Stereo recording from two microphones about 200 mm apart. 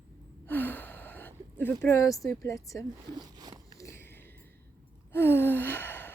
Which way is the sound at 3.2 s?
20° right (ahead or behind).